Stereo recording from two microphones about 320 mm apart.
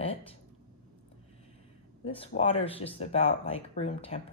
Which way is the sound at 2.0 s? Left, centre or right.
Centre.